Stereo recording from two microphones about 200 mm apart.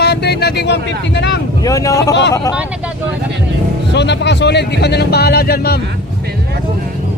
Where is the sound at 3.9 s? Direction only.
60° left (ahead or behind).